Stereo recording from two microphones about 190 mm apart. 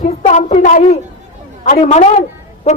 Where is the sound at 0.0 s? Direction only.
40° left (ahead or behind).